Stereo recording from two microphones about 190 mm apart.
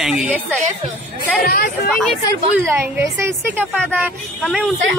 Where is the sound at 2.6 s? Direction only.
10° right (ahead or behind).